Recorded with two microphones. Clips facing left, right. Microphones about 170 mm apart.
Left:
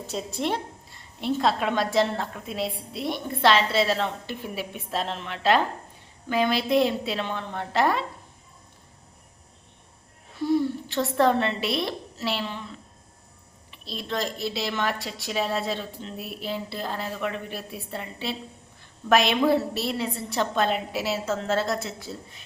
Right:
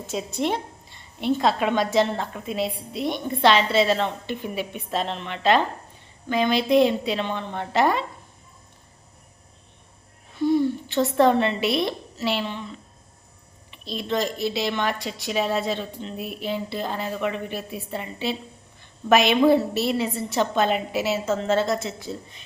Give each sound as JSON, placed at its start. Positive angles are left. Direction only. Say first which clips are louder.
{"t": 0.3, "sound": "a woman's voice", "louder": "right 3 dB", "side_deg": 0}
{"t": 10.4, "sound": "a woman's voice", "louder": "right 3 dB", "side_deg": 0}
{"t": 13.8, "sound": "a woman's voice", "louder": "right 4 dB", "side_deg": 0}